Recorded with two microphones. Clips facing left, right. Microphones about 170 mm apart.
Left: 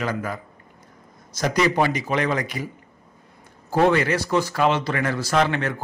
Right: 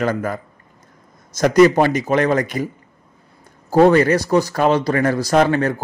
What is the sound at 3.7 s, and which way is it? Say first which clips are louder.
A man's voice: right 7 dB; 40° right (ahead or behind).